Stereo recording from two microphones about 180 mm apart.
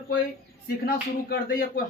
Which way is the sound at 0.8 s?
55° left (ahead or behind).